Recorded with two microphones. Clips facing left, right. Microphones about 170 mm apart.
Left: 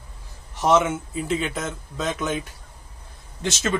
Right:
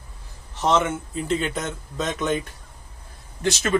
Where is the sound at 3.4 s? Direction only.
20° left (ahead or behind).